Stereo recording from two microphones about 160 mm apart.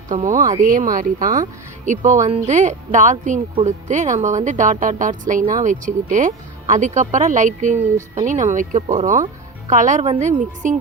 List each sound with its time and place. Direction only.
0.1 s speech: 50° right (ahead or behind)